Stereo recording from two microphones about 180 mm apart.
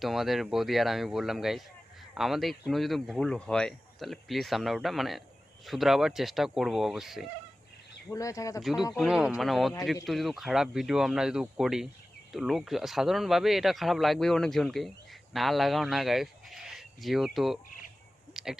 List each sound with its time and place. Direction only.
0.0 s speech: centre (ahead or behind)
8.1 s speech: 20° left (ahead or behind)
9.0 s speech: 5° right (ahead or behind)
18.3 s a sound: 5° right (ahead or behind)